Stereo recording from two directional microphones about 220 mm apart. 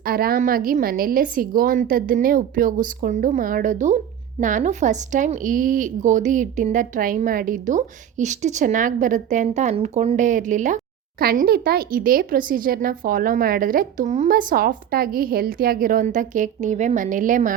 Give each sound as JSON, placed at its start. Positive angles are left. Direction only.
{"t": 0.0, "sound": "a woman's voice", "side_deg": -40}